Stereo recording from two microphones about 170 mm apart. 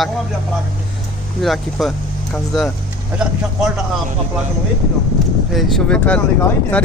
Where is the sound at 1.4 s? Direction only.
Centre (ahead or behind).